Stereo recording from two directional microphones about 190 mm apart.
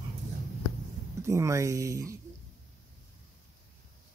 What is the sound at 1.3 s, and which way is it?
Speech, 15° right (ahead or behind).